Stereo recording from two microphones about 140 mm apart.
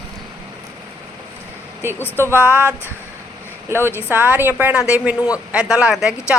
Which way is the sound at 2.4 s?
15° right (ahead or behind).